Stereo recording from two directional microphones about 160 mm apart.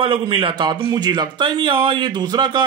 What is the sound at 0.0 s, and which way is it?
A man's voice, 35° right (ahead or behind).